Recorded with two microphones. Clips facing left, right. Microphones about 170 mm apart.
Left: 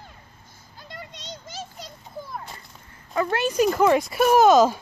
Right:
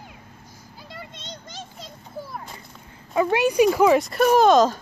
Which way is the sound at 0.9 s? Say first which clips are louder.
Left 1 dB; centre (ahead or behind).